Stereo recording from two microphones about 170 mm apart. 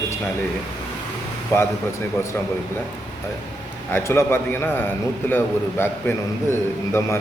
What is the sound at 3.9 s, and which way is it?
A man's voice, 15° left (ahead or behind).